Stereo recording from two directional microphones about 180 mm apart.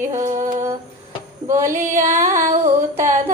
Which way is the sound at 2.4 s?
40° right (ahead or behind).